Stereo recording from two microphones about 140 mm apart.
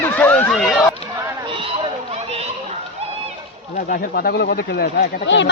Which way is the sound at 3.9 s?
90° left.